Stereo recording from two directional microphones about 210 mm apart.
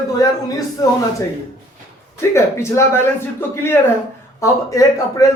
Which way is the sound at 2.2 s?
15° left (ahead or behind).